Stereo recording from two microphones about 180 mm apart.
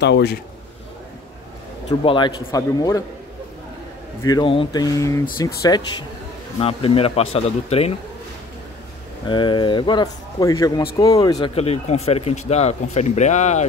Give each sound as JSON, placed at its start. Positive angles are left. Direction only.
{"t": 0.0, "sound": "a man's voice", "side_deg": 70}
{"t": 1.9, "sound": "speech", "side_deg": 30}
{"t": 4.2, "sound": "speech", "side_deg": 20}
{"t": 9.3, "sound": "speech", "side_deg": 25}
{"t": 11.5, "sound": "speech", "side_deg": 35}